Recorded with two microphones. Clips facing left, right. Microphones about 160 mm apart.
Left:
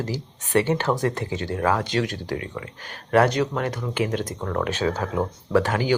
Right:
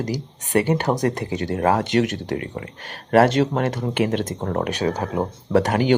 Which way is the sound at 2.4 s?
45° right (ahead or behind).